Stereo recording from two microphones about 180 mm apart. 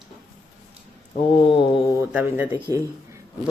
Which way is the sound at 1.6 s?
25° left (ahead or behind).